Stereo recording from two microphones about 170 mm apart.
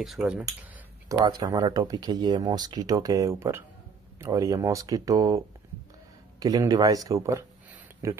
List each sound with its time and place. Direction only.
0.0 s speech: centre (ahead or behind)
1.0 s speech: 25° right (ahead or behind)
6.4 s speech: 20° right (ahead or behind)